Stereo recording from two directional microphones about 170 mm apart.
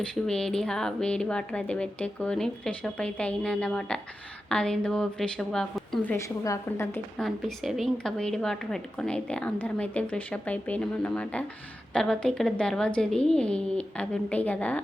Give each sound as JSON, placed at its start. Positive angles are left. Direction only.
{"t": 0.0, "sound": "speech", "side_deg": 5}
{"t": 6.1, "sound": "a woman's voice", "side_deg": 20}
{"t": 7.2, "sound": "a woman's voice", "side_deg": 0}